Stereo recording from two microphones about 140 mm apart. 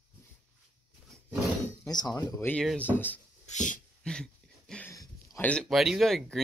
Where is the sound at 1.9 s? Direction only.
30° left (ahead or behind).